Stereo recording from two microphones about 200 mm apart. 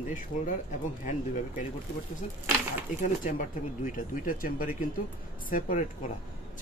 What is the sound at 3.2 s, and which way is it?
Speech, 45° left (ahead or behind).